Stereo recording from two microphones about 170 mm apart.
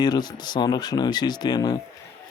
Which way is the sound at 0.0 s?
25° left (ahead or behind).